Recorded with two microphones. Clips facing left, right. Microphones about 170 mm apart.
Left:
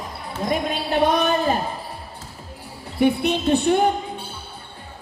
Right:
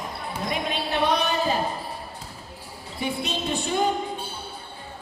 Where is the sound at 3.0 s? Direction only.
60° left (ahead or behind).